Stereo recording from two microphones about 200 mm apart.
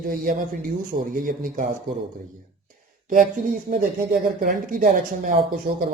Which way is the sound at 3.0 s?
45° right (ahead or behind).